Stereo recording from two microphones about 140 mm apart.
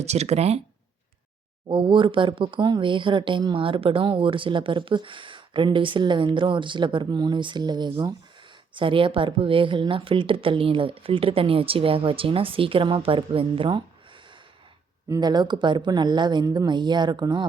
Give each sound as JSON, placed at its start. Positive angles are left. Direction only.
{"t": 0.0, "sound": "speech", "side_deg": -50}
{"t": 1.6, "sound": "speech", "side_deg": -35}
{"t": 15.1, "sound": "speech", "side_deg": -30}